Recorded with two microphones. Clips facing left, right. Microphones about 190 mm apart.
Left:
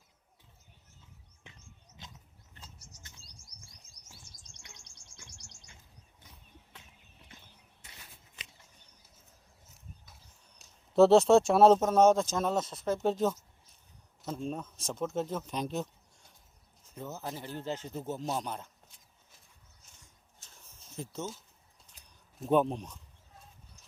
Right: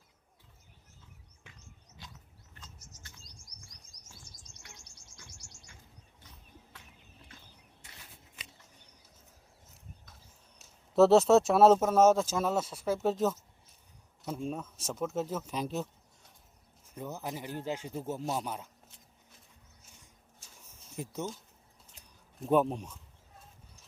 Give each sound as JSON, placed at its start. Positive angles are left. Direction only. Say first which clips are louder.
{"t": 2.0, "sound": "wild animals", "louder": "even", "side_deg": 20}
{"t": 10.6, "sound": "speech", "louder": "left 1 dB", "side_deg": -5}
{"t": 17.2, "sound": "speech", "louder": "right 1 dB", "side_deg": -15}
{"t": 20.5, "sound": "a sound", "louder": "right 1 dB", "side_deg": -15}
{"t": 22.4, "sound": "speech", "louder": "even", "side_deg": -5}